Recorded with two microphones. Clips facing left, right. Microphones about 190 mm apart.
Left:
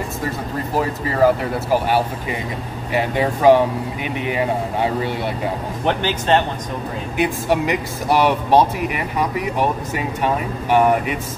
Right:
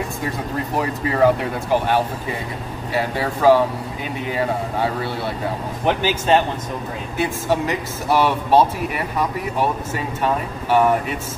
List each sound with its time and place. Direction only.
0.7 s speech: centre (ahead or behind); by 3.6 s 15° left (ahead or behind)
5.9 s speech: 10° right (ahead or behind)
7.2 s speech: 15° left (ahead or behind)